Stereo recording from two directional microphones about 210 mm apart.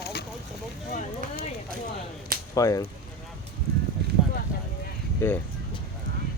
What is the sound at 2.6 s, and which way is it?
Speech, 15° left (ahead or behind).